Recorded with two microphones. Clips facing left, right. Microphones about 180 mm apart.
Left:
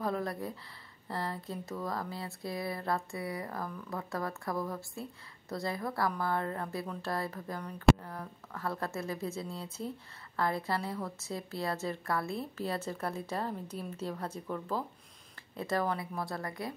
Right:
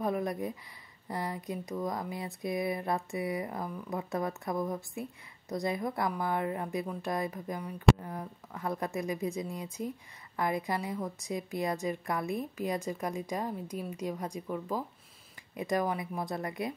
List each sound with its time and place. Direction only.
0.0 s speech: 20° right (ahead or behind)